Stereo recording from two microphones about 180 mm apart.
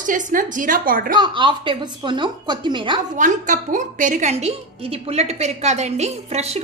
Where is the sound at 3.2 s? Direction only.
45° right (ahead or behind).